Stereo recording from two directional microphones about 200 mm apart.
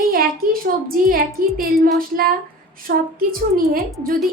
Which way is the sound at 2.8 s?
45° right (ahead or behind).